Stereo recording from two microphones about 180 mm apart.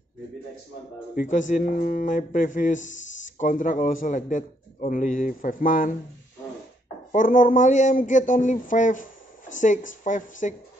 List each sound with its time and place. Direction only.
1.1 s speech: 45° left (ahead or behind)
7.1 s speech: 45° left (ahead or behind)